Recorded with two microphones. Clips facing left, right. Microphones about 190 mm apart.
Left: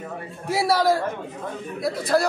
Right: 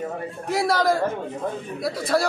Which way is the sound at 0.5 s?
5° left (ahead or behind).